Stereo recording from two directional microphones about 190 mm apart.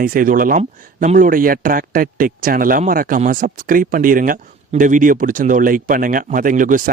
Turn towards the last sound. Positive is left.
turn(degrees=-45)  # may be behind; listen again after turning